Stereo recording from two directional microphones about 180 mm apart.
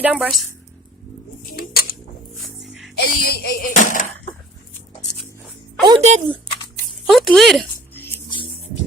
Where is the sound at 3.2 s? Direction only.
60° left (ahead or behind).